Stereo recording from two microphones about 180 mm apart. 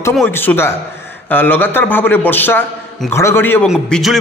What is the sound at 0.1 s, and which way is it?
A man's voice, 10° left (ahead or behind).